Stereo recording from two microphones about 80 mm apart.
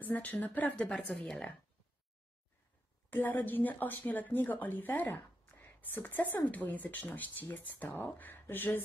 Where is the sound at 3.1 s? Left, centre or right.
Left.